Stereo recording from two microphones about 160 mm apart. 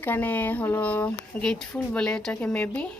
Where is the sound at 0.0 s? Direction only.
10° left (ahead or behind).